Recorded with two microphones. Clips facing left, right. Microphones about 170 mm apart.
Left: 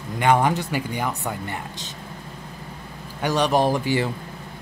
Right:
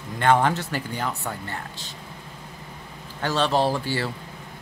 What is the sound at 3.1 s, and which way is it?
Speech, 15° left (ahead or behind).